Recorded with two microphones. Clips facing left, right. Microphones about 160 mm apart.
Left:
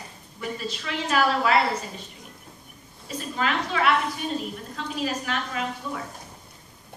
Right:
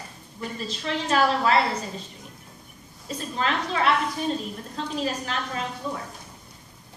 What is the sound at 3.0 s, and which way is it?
A woman's voice, 35° right (ahead or behind).